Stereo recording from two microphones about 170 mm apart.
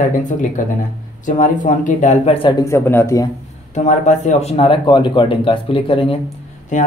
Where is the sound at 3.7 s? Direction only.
45° left (ahead or behind).